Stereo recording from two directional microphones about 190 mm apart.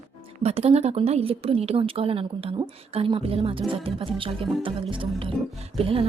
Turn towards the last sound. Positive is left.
turn(degrees=-30)  # may be behind; listen again after turning